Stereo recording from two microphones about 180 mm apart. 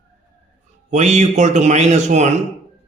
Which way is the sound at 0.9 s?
40° right (ahead or behind).